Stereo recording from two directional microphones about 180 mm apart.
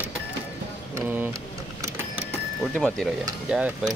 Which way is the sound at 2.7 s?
5° left (ahead or behind).